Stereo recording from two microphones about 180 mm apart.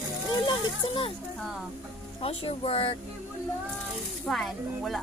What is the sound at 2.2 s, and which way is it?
Speech, 30° left (ahead or behind).